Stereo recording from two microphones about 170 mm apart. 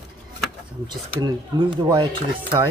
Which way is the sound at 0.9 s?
25° right (ahead or behind).